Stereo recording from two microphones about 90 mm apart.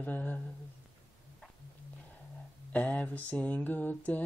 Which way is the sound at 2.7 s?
15° left (ahead or behind).